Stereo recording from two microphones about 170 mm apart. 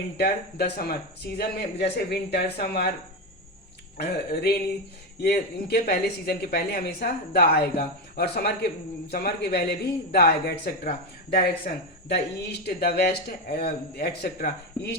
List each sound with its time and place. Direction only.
0.2 s a man's voice: 70° left (ahead or behind)
3.9 s a man's voice: 70° left (ahead or behind)